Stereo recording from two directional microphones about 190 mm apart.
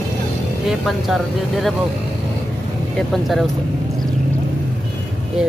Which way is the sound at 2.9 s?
Centre (ahead or behind).